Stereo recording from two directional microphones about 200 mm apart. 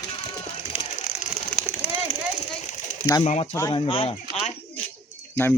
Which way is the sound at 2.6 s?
40° left (ahead or behind).